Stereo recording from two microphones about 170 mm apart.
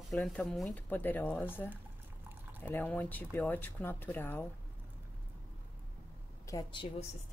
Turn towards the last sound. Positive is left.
turn(degrees=30)  # may be behind; listen again after turning